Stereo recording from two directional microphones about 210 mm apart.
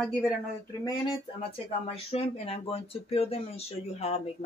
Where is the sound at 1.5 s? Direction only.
25° left (ahead or behind).